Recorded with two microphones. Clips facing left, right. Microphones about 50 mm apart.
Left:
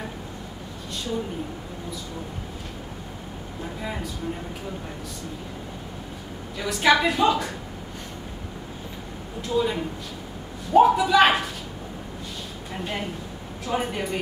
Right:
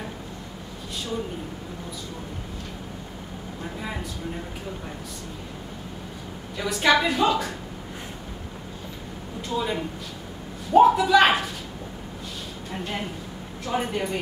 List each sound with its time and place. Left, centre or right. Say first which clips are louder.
6.5 s a woman's voice: left 1 dB; centre
9.4 s a woman's voice: left 3 dB; centre
12.7 s a woman's voice: left 1 dB; centre